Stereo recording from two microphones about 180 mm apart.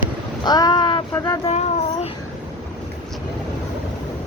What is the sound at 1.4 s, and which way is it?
Speech, 35° left (ahead or behind).